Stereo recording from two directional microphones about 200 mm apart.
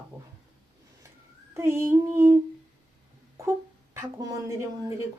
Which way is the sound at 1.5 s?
15° right (ahead or behind).